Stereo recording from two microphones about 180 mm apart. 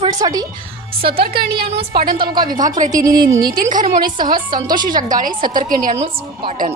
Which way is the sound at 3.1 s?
20° right (ahead or behind).